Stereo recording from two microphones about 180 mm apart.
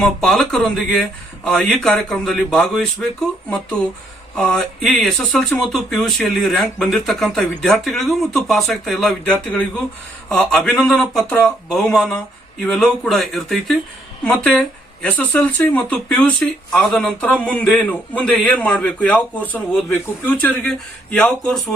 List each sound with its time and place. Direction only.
0.0 s speech: centre (ahead or behind)
4.4 s a man's voice: centre (ahead or behind)